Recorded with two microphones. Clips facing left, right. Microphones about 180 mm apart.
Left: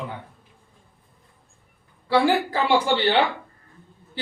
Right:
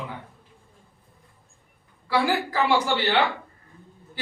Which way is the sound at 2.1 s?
30° left (ahead or behind).